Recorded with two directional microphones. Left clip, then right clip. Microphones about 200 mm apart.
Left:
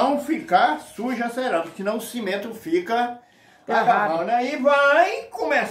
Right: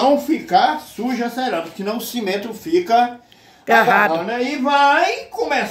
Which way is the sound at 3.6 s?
15° right (ahead or behind).